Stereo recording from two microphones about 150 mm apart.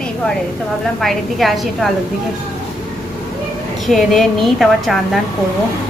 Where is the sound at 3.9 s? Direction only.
Centre (ahead or behind).